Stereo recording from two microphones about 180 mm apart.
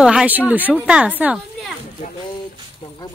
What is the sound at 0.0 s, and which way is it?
Speech, 5° right (ahead or behind).